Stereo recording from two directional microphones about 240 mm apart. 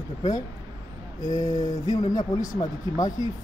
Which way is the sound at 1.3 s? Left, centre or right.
Centre.